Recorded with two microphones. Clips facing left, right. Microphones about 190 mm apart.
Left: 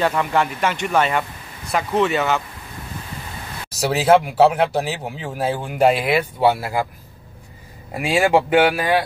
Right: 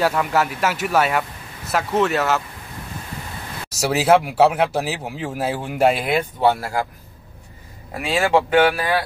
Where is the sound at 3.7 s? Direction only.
Centre (ahead or behind).